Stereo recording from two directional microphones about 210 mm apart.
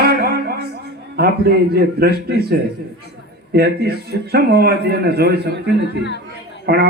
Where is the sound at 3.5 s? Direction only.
50° right (ahead or behind).